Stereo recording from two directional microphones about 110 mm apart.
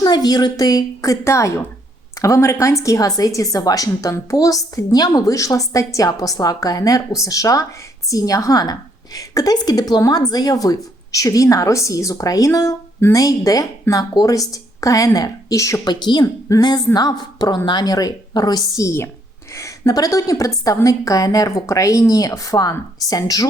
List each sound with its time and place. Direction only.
0.0 s a woman's voice: 40° left (ahead or behind)
15.9 s a woman's voice: 45° left (ahead or behind)